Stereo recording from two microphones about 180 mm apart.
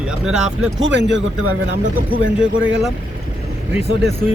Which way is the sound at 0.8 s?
85° right.